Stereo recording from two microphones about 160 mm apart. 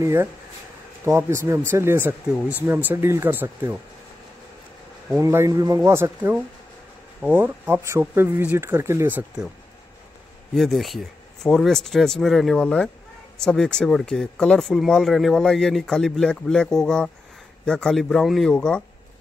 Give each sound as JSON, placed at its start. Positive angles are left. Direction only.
{"t": 0.0, "sound": "speech", "side_deg": -15}
{"t": 5.2, "sound": "speech", "side_deg": -20}
{"t": 10.5, "sound": "speech", "side_deg": 0}